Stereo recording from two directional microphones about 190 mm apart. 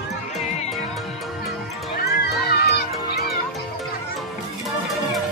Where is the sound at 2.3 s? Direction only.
55° left (ahead or behind).